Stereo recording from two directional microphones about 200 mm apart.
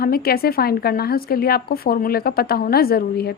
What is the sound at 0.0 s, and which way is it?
A woman's voice, 50° left (ahead or behind).